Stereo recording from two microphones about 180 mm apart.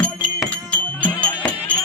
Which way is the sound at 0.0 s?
5° left (ahead or behind).